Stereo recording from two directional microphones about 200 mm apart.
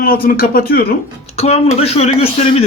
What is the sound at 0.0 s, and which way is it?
Speech, 45° left (ahead or behind).